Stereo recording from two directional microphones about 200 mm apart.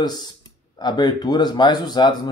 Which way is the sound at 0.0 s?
20° left (ahead or behind).